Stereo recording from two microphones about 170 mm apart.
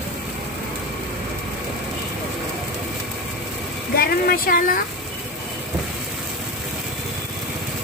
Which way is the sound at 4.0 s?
60° left (ahead or behind).